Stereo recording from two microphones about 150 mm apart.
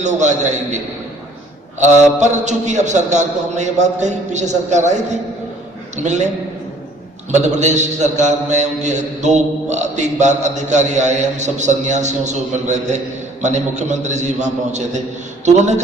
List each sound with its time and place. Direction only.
0.0 s a man's voice: 50° right (ahead or behind)